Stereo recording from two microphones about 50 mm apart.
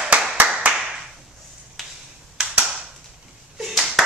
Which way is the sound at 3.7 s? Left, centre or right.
Centre.